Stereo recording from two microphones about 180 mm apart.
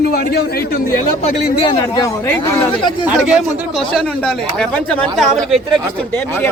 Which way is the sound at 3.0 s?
5° right (ahead or behind).